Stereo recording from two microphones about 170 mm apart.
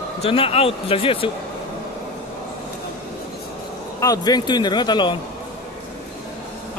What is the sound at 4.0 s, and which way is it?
A man's voice, 20° left (ahead or behind).